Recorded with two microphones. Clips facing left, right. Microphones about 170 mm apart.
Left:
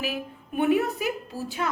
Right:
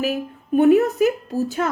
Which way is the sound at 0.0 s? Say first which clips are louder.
Right 8 dB; 45° right (ahead or behind).